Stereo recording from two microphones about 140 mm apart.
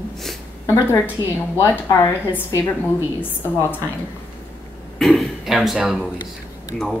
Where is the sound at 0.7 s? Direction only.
15° left (ahead or behind).